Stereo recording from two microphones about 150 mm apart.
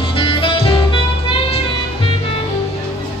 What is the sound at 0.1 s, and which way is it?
Music, 35° left (ahead or behind).